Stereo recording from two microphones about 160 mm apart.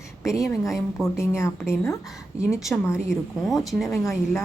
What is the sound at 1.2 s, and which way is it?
Speech, 15° left (ahead or behind).